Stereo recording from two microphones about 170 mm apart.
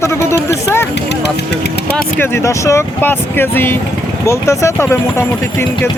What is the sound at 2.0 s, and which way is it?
Speech, 10° left (ahead or behind).